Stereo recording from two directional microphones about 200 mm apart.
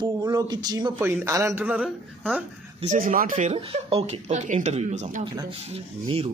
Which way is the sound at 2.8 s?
40° right (ahead or behind).